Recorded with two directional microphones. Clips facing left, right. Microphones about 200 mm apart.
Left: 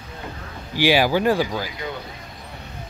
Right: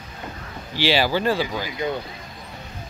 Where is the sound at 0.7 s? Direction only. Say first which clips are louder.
Left 3 dB; 15° left (ahead or behind).